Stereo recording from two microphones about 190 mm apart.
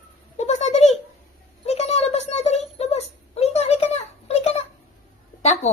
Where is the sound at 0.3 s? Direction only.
40° left (ahead or behind).